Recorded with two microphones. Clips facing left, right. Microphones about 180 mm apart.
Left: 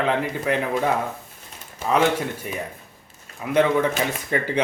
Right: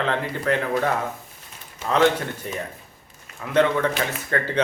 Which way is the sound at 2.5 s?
10° left (ahead or behind).